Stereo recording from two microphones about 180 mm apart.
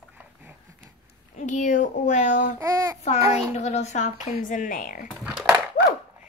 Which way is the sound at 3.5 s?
40° left (ahead or behind).